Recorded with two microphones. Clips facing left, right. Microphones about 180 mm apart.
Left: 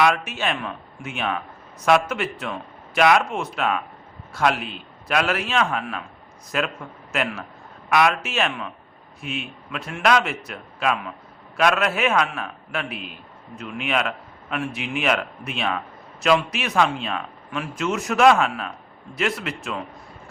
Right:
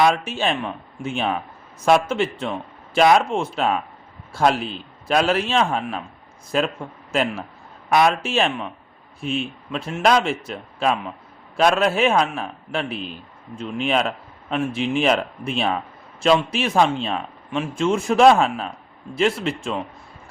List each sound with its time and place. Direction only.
0.0 s a man's voice: 30° right (ahead or behind)